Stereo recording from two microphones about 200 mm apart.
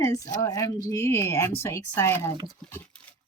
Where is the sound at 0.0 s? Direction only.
15° left (ahead or behind).